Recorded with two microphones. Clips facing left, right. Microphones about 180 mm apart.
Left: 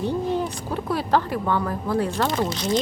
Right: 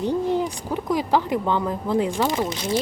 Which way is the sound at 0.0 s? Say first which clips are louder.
Right 2 dB; 15° right (ahead or behind).